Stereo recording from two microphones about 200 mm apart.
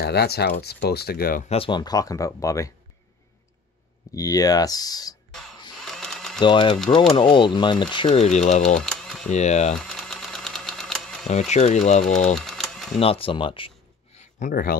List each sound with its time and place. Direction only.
0.0 s speech: 55° left (ahead or behind)
1.5 s speech: 25° left (ahead or behind)
4.1 s speech: 15° left (ahead or behind)
5.8 s a sound: centre (ahead or behind)
6.4 s speech: 25° left (ahead or behind)
8.1 s speech: 35° left (ahead or behind)
8.7 s typewriter: centre (ahead or behind)
9.3 s speech: 35° left (ahead or behind)
9.8 s a sound: centre (ahead or behind)
11.2 s speech: 35° left (ahead or behind)
12.4 s typing: centre (ahead or behind)
13.0 s a sound: 30° left (ahead or behind)
14.4 s speech: 45° left (ahead or behind)